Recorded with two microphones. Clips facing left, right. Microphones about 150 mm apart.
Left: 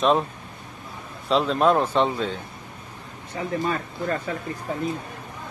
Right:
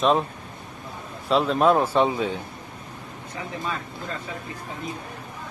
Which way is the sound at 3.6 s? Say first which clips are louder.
Left 5 dB; 55° left (ahead or behind).